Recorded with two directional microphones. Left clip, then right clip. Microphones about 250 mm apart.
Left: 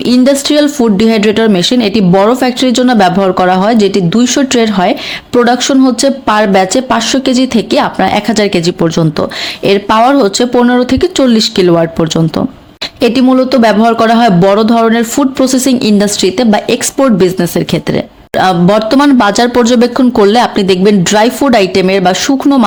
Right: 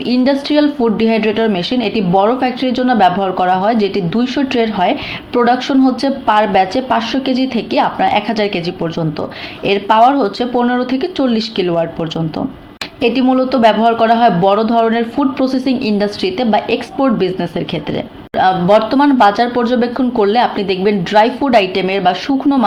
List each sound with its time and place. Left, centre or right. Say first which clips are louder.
0.0 s a man's voice: left 6 dB; left